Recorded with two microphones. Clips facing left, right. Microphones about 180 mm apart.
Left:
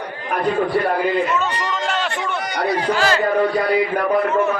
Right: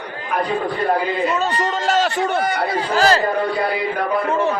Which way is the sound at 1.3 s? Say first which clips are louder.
Right 2 dB; 35° right (ahead or behind).